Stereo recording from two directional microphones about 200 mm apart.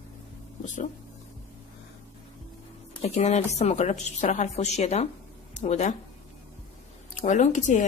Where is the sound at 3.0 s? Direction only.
35° left (ahead or behind).